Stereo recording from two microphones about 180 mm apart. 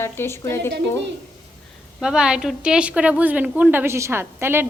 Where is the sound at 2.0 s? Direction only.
5° right (ahead or behind).